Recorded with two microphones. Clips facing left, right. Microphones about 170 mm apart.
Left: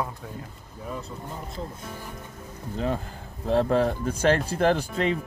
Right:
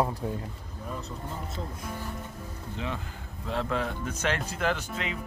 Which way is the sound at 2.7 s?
40° left (ahead or behind).